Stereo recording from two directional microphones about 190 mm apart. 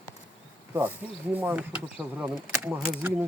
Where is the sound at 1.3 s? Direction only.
10° right (ahead or behind).